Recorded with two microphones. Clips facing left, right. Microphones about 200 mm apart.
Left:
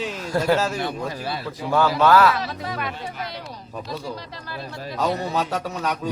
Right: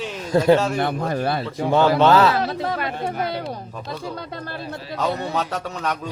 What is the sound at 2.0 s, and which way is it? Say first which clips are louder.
Speech: left 1 dB; 25° right (ahead or behind).